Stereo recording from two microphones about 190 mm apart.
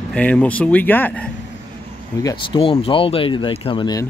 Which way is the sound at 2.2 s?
25° left (ahead or behind).